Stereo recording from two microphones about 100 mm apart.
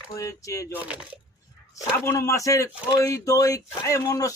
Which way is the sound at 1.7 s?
30° left (ahead or behind).